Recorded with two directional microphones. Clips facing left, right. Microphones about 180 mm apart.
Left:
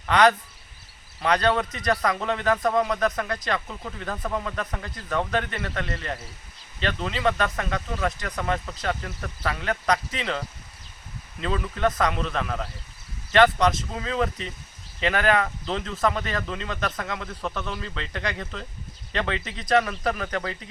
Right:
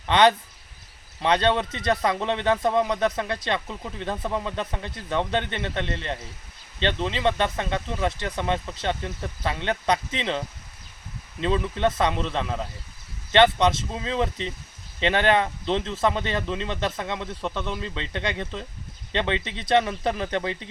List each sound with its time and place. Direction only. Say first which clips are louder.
0.0 s speech: right 1 dB; 25° right (ahead or behind)